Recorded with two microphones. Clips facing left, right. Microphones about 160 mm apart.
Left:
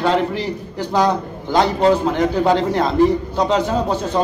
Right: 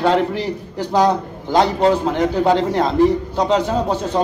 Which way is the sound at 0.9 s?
35° right (ahead or behind).